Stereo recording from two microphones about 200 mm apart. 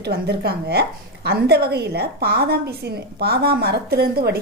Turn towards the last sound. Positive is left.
turn(degrees=-50)  # may be behind; listen again after turning